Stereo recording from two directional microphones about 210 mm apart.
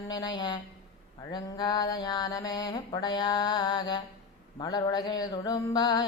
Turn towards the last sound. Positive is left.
turn(degrees=20)  # may be behind; listen again after turning